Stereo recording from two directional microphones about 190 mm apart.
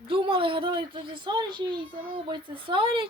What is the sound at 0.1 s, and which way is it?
A child's voice, 25° right (ahead or behind).